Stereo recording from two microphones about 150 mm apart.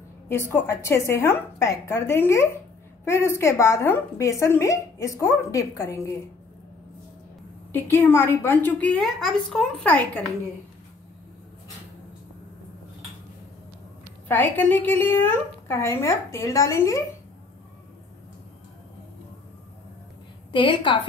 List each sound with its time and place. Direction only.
0.3 s a woman's voice: 15° left (ahead or behind)
7.7 s a woman's voice: 15° left (ahead or behind)
9.0 s a woman's voice: centre (ahead or behind)
14.2 s a woman's voice: 15° left (ahead or behind)
20.5 s a woman's voice: 35° left (ahead or behind)